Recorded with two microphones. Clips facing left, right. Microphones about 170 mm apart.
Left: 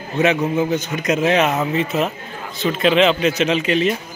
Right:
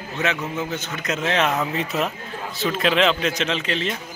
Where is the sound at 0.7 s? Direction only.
15° left (ahead or behind).